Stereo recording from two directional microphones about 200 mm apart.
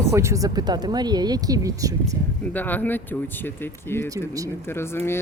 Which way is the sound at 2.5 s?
10° left (ahead or behind).